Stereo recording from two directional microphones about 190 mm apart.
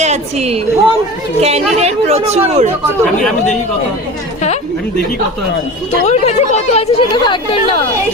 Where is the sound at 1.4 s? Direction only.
35° right (ahead or behind).